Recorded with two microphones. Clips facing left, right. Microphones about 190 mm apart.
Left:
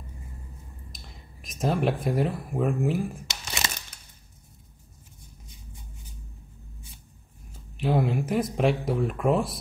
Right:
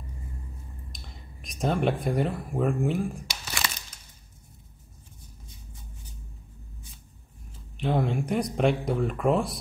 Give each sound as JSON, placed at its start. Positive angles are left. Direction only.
{"t": 0.9, "sound": "speech", "side_deg": 0}
{"t": 3.3, "sound": "crumpling", "side_deg": 25}
{"t": 7.7, "sound": "speech", "side_deg": 5}